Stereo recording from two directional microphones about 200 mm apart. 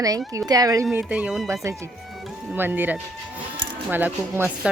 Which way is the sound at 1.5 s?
15° right (ahead or behind).